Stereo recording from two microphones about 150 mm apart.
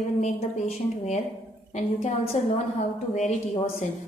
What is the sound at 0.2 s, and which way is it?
A woman's voice, 45° left (ahead or behind).